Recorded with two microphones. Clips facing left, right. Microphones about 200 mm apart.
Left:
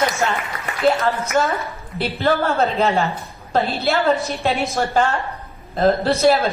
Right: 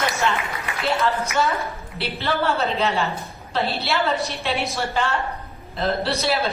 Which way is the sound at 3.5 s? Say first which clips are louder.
Left 4 dB; 50° left (ahead or behind).